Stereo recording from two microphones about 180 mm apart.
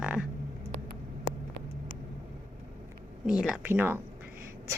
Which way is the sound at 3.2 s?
5° right (ahead or behind).